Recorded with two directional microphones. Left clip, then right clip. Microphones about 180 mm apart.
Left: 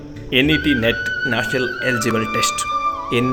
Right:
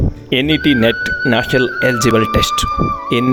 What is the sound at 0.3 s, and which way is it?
Speech, 55° right (ahead or behind).